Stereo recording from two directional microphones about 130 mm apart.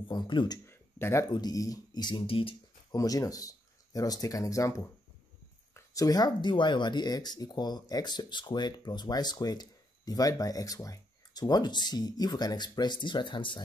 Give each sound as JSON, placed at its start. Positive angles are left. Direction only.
{"t": 0.1, "sound": "speech", "side_deg": 35}
{"t": 0.7, "sound": "a sound", "side_deg": 20}
{"t": 1.3, "sound": "speech", "side_deg": 30}
{"t": 2.9, "sound": "speech", "side_deg": 25}
{"t": 5.9, "sound": "speech", "side_deg": 30}